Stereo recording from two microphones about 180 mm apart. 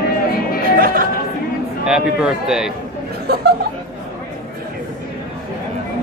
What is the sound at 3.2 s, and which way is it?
Chuckle, 60° right (ahead or behind).